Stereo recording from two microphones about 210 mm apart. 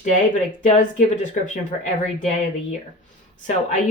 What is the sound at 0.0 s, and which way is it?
Speech, 35° left (ahead or behind).